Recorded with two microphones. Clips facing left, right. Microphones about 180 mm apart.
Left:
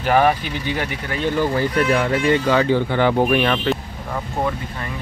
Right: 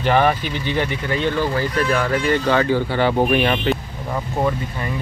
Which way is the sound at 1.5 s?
25° left (ahead or behind).